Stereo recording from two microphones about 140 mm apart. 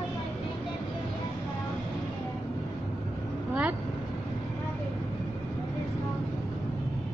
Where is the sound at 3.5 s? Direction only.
10° right (ahead or behind).